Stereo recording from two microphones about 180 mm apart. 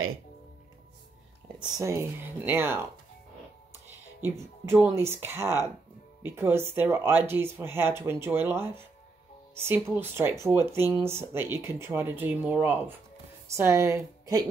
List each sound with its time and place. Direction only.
1.6 s speech: 15° right (ahead or behind)
4.2 s speech: 10° right (ahead or behind)